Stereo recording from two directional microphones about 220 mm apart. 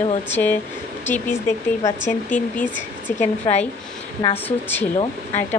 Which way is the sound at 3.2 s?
30° left (ahead or behind).